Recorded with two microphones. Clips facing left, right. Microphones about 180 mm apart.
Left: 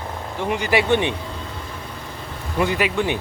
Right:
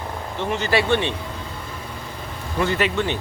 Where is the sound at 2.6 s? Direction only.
15° left (ahead or behind).